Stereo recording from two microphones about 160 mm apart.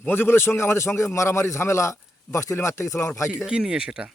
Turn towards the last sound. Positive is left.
turn(degrees=-5)  # may be behind; listen again after turning